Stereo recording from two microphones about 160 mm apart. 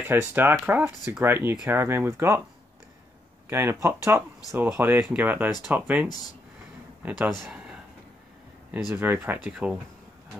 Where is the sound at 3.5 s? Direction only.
15° right (ahead or behind).